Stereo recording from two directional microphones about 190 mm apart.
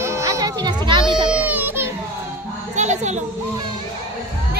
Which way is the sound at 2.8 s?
40° right (ahead or behind).